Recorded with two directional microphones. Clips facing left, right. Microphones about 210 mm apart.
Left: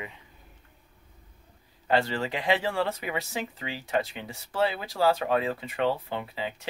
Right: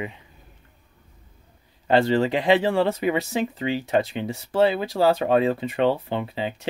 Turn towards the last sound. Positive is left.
turn(degrees=-25)  # may be behind; listen again after turning